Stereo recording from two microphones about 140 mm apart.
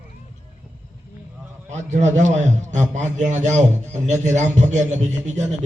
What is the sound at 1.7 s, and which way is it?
A man's voice, 60° right (ahead or behind).